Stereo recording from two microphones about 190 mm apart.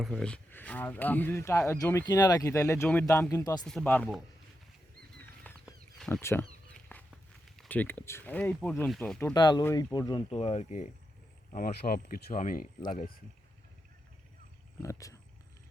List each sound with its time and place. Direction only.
0.0 s speech: 5° left (ahead or behind)
3.6 s speech: 5° left (ahead or behind)
5.1 s bird flight: 10° left (ahead or behind)
6.1 s speech: 10° left (ahead or behind)
6.7 s a sound: 5° left (ahead or behind)
7.6 s speech: 10° left (ahead or behind)
9.3 s speech: 20° left (ahead or behind); by 12.6 s 45° left (ahead or behind)
14.8 s speech: 15° left (ahead or behind)